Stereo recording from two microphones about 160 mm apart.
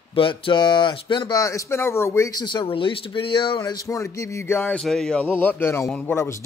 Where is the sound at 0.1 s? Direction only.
35° left (ahead or behind); by 6.1 s 5° left (ahead or behind).